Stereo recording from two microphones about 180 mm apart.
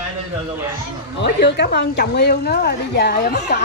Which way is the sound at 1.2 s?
70° left (ahead or behind).